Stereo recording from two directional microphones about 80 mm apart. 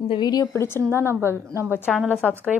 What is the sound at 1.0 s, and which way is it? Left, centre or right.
Speech, right.